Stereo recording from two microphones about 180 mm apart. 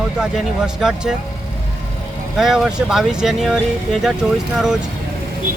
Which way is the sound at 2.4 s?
5° right (ahead or behind).